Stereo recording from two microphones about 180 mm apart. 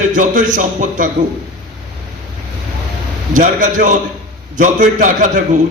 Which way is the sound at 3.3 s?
45° right (ahead or behind).